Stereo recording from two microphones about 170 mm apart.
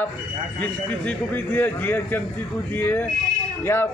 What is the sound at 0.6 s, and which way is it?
A man's voice, 10° left (ahead or behind).